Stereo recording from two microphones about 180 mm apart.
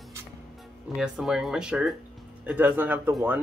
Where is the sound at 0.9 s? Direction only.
Centre (ahead or behind).